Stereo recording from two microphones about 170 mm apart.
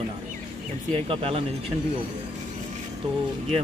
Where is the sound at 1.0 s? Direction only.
35° right (ahead or behind).